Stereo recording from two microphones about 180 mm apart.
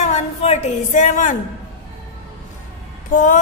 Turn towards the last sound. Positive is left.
turn(degrees=45)  # may be behind; listen again after turning